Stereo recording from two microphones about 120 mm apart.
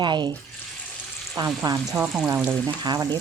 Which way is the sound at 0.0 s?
40° right (ahead or behind).